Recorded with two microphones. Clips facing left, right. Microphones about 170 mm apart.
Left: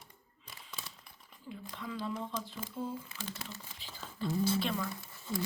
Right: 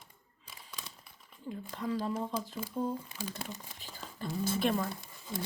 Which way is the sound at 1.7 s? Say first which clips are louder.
Right 5 dB; 45° right (ahead or behind).